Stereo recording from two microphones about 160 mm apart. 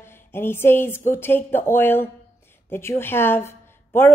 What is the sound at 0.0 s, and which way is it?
A woman's voice, 15° left (ahead or behind).